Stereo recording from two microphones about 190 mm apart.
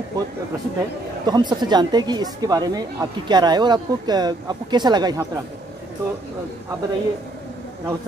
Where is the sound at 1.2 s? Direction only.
20° right (ahead or behind).